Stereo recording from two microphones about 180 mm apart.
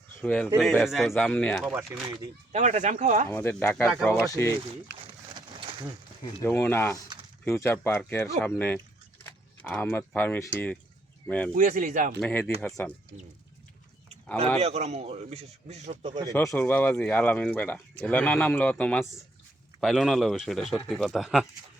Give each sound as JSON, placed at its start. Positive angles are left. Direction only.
{"t": 0.2, "sound": "speech", "side_deg": 5}
{"t": 2.5, "sound": "speech", "side_deg": -40}
{"t": 3.2, "sound": "speech", "side_deg": 10}
{"t": 5.3, "sound": "a sound", "side_deg": -25}
{"t": 6.4, "sound": "speech", "side_deg": 10}
{"t": 9.2, "sound": "a sound", "side_deg": 10}
{"t": 10.2, "sound": "speech", "side_deg": 10}
{"t": 11.5, "sound": "speech", "side_deg": -50}
{"t": 12.2, "sound": "speech", "side_deg": 10}
{"t": 14.6, "sound": "speech", "side_deg": -35}
{"t": 16.3, "sound": "speech", "side_deg": 15}